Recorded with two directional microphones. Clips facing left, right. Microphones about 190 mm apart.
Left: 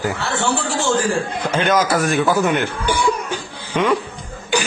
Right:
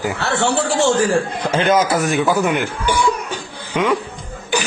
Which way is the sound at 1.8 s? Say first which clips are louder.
Even; 10° right (ahead or behind).